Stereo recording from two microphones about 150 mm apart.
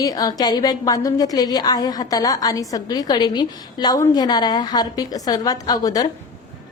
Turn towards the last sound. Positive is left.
turn(degrees=25)  # may be behind; listen again after turning